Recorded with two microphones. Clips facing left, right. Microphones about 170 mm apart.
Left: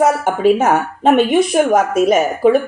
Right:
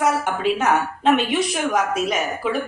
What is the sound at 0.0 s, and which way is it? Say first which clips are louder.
Speech: left 7 dB; 50° left (ahead or behind).